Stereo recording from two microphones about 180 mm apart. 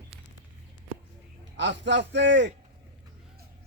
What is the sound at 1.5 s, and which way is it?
Speech, 80° right.